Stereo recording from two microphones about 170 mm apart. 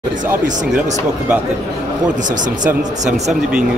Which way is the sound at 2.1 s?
50° right (ahead or behind).